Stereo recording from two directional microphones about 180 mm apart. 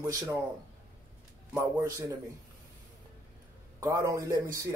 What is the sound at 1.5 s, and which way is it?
Speech, 15° right (ahead or behind).